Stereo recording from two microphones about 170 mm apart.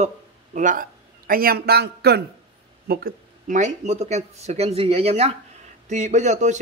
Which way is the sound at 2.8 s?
60° right (ahead or behind).